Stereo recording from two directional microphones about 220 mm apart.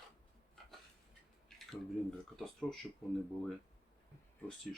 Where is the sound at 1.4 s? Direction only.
Centre (ahead or behind).